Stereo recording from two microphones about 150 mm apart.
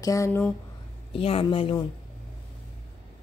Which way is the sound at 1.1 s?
40° left (ahead or behind).